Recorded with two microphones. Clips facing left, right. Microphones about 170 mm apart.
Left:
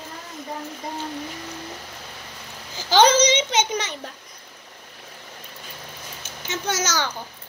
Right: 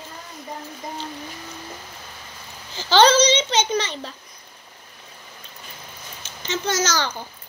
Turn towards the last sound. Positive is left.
turn(degrees=10)  # may be behind; listen again after turning